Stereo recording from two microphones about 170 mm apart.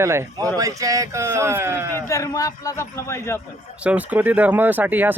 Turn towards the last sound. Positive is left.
turn(degrees=-10)  # may be behind; listen again after turning